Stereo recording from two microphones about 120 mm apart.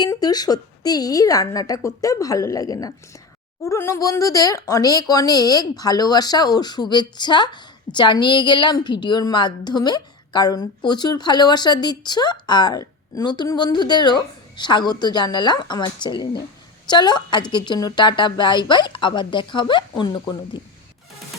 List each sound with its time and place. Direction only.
0.0 s speech: 35° left (ahead or behind)